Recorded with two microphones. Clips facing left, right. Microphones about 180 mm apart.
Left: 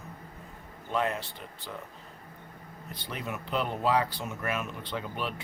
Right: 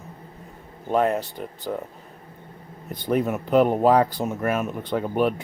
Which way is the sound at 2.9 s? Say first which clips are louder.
Right 14 dB; 45° right (ahead or behind).